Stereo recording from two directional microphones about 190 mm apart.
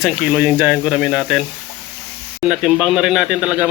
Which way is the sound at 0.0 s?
5° right (ahead or behind).